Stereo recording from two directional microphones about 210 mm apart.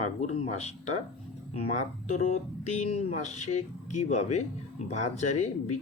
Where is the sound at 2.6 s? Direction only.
30° left (ahead or behind).